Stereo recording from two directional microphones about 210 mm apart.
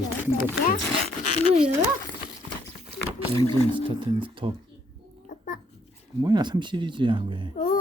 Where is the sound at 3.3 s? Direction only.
25° right (ahead or behind).